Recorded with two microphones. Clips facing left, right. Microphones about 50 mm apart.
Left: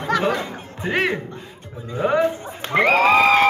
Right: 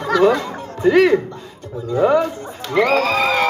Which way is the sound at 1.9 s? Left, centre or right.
Left.